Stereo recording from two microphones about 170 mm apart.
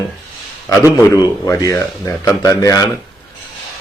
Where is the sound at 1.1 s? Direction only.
20° left (ahead or behind).